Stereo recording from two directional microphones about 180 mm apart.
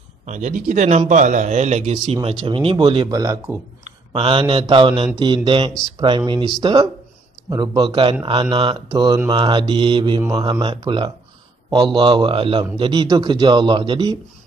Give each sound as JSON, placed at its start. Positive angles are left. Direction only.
{"t": 0.2, "sound": "a man's voice", "side_deg": -45}